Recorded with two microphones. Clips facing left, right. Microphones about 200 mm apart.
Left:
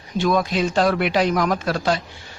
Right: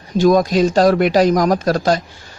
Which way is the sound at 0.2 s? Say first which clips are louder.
Right 7 dB; 40° right (ahead or behind).